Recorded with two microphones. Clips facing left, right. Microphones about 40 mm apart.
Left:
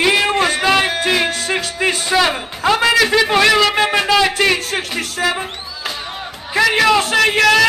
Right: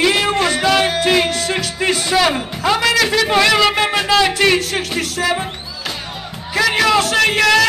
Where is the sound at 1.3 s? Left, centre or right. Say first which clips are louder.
Even; left.